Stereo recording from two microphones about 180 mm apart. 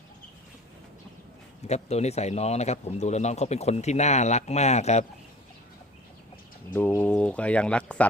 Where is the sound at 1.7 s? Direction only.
35° left (ahead or behind).